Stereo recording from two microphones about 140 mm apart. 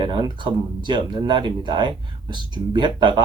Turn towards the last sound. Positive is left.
turn(degrees=-35)  # may be behind; listen again after turning